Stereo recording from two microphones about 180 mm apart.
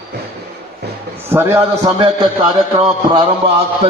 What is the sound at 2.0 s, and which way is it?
A man's voice, 25° right (ahead or behind).